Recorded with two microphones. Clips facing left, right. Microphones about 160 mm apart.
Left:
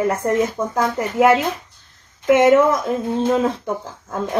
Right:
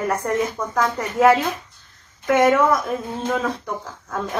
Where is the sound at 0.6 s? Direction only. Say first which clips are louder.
Left 2 dB; 20° left (ahead or behind).